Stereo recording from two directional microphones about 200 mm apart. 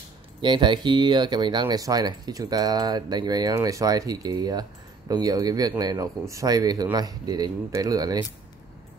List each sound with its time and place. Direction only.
0.4 s speech: 25° right (ahead or behind)